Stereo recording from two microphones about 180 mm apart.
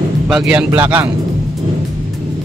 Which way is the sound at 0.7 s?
10° right (ahead or behind).